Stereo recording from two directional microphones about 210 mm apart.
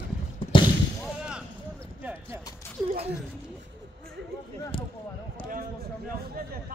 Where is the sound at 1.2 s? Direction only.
5° right (ahead or behind).